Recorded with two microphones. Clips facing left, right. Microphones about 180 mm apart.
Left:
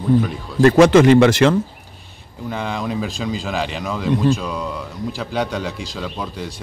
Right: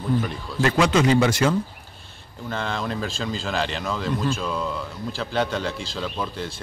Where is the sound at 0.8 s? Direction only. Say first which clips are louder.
Left 8 dB; 60° left (ahead or behind).